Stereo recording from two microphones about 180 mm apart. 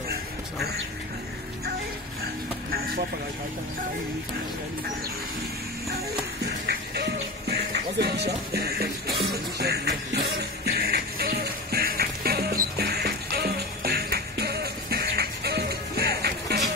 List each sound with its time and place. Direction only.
6.4 s music: 65° right (ahead or behind)